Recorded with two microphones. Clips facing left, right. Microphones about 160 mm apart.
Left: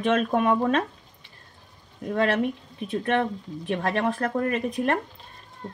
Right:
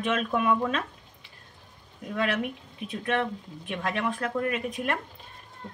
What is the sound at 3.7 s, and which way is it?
Speech, 40° left (ahead or behind).